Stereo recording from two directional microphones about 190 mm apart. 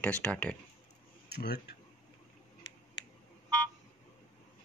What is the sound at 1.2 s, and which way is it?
Speech, 60° left (ahead or behind).